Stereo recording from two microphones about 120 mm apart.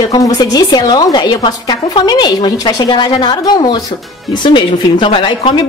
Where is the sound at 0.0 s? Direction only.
30° left (ahead or behind).